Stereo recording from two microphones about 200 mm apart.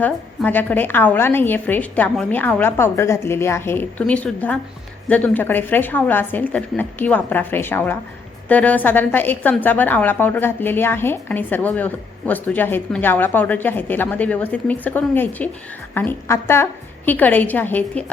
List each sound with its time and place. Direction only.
0.0 s a woman's voice: 10° left (ahead or behind)